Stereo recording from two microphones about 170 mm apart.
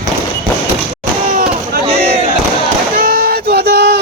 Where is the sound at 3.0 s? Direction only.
60° right (ahead or behind).